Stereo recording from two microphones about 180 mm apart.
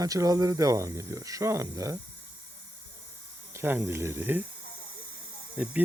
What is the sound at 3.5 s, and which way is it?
Speech, 15° right (ahead or behind).